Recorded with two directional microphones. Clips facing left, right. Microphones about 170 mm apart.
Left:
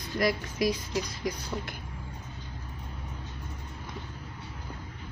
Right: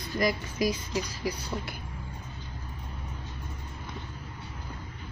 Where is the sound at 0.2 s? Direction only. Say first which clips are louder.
Even; centre (ahead or behind).